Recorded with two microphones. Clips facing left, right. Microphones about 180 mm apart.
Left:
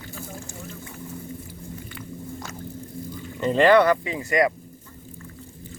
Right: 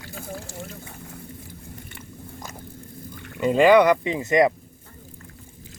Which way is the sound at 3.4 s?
10° right (ahead or behind).